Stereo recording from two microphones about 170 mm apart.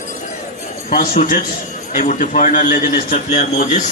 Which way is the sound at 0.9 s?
55° left (ahead or behind).